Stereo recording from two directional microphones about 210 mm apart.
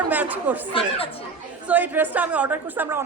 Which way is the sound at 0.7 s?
25° left (ahead or behind).